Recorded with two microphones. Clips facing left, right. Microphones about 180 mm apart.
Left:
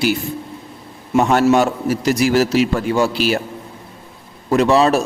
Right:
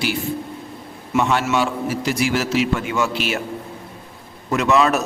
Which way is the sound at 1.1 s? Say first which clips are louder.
Left 6 dB; 45° left (ahead or behind).